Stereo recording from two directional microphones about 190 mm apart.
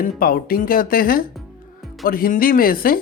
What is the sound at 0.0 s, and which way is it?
Speech, 50° left (ahead or behind).